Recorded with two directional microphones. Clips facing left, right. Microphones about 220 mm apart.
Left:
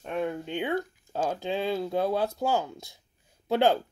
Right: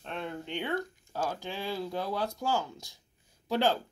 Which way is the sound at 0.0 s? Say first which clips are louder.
Left 7 dB; 10° left (ahead or behind).